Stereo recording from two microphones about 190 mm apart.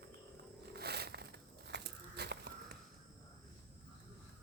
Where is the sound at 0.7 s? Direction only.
60° right (ahead or behind).